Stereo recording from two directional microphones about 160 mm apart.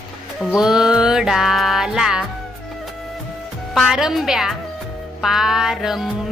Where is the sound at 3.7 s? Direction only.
Centre (ahead or behind).